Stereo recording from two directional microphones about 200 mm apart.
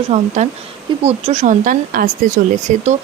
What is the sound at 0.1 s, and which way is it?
Speech, 35° right (ahead or behind).